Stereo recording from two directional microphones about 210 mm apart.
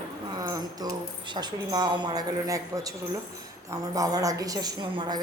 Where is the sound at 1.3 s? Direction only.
20° right (ahead or behind).